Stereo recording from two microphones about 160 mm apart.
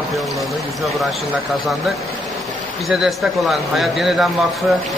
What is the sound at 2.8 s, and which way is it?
Speech, centre (ahead or behind).